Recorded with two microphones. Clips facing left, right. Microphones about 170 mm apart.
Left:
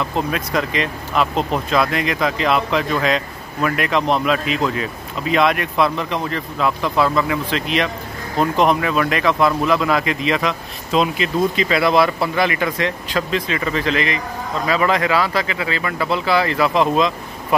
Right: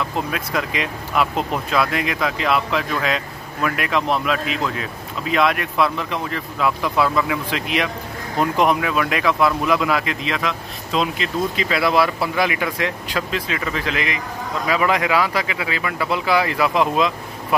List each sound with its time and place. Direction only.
0.3 s speech: 5° right (ahead or behind)